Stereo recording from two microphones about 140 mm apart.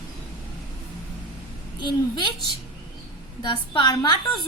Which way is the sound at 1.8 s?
30° left (ahead or behind).